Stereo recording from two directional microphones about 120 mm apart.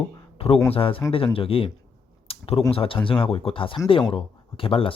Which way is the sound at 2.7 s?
50° left (ahead or behind).